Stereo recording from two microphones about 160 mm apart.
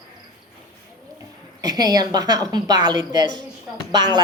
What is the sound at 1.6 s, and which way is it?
A woman's voice, 25° right (ahead or behind).